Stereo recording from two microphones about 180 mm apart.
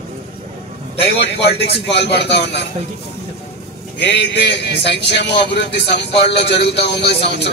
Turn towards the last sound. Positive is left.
turn(degrees=70)  # may be behind; listen again after turning